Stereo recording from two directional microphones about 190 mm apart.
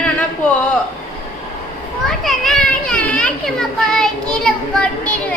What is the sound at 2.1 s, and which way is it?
Children playing, centre (ahead or behind).